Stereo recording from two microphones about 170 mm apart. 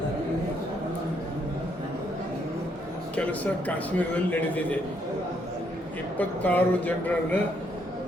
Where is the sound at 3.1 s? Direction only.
10° left (ahead or behind).